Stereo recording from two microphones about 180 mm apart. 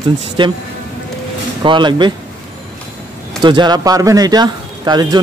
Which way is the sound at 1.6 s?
25° right (ahead or behind).